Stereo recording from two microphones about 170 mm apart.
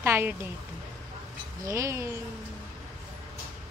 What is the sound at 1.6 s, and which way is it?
Speech, 20° right (ahead or behind).